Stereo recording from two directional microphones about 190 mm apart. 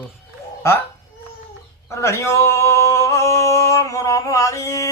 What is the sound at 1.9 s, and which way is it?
Speech, 15° left (ahead or behind).